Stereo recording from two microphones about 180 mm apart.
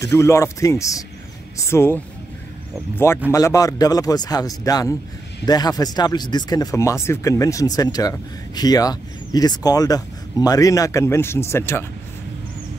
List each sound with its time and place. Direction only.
0.0 s a man's voice: 15° left (ahead or behind)
3.3 s speech: 15° left (ahead or behind)